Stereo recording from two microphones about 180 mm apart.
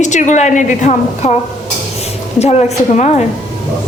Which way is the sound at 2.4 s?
35° left (ahead or behind).